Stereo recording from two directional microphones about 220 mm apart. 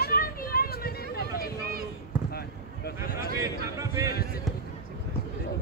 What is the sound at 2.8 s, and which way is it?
Speech, 40° left (ahead or behind).